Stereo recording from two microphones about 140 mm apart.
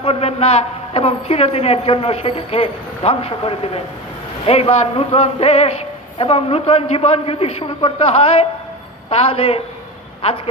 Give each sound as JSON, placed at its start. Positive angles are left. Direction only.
{"t": 0.0, "sound": "a man's voice", "side_deg": 45}